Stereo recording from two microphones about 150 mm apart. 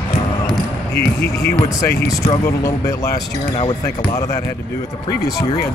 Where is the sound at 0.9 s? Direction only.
90° left.